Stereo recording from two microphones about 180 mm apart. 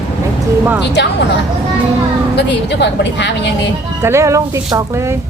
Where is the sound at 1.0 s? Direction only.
70° left (ahead or behind).